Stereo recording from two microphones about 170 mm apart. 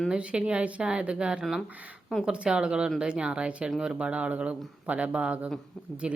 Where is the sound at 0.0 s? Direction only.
5° right (ahead or behind).